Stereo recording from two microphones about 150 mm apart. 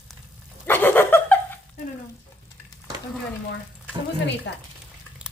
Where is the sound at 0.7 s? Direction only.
15° left (ahead or behind).